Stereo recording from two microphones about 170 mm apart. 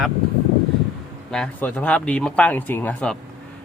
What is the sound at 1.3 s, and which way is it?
Speech, 5° left (ahead or behind).